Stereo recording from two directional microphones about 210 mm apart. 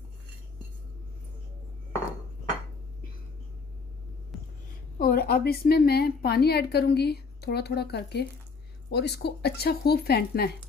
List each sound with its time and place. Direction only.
4.3 s hum: centre (ahead or behind)
4.9 s a woman's voice: 45° left (ahead or behind)